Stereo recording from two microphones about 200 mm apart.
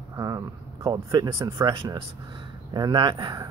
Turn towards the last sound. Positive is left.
turn(degrees=-20)  # may be behind; listen again after turning